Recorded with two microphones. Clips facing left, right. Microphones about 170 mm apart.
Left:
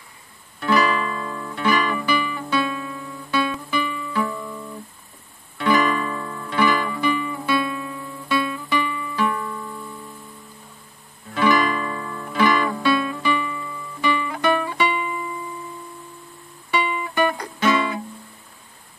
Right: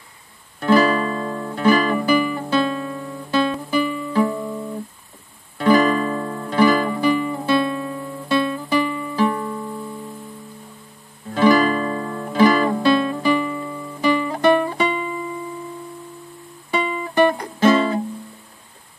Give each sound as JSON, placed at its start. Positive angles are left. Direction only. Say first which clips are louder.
{"t": 0.6, "sound": "music", "louder": "right 4 dB", "side_deg": -40}
{"t": 11.3, "sound": "music", "louder": "right 4 dB", "side_deg": -35}
{"t": 16.7, "sound": "music", "louder": "right 3 dB", "side_deg": -40}